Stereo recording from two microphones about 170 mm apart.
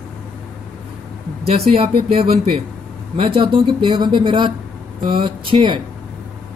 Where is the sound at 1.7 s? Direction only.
35° right (ahead or behind).